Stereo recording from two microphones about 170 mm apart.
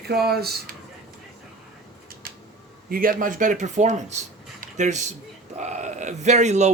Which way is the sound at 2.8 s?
60° right (ahead or behind).